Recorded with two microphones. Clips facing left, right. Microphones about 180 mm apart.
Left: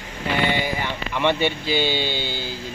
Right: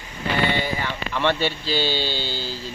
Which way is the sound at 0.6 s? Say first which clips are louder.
Even; 15° left (ahead or behind).